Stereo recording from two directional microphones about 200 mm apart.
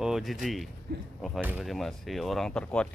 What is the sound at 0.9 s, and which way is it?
Speech, 50° right (ahead or behind).